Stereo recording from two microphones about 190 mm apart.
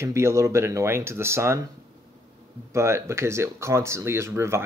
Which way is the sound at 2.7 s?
15° right (ahead or behind).